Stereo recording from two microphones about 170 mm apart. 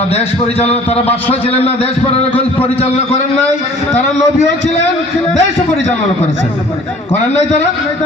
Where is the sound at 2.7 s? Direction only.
40° left (ahead or behind).